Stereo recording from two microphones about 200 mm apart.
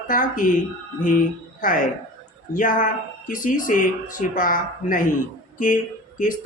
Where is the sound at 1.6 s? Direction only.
45° left (ahead or behind).